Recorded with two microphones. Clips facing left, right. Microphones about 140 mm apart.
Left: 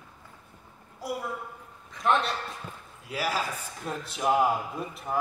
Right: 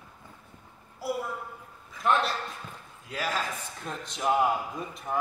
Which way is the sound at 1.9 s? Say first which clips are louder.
Even; centre (ahead or behind).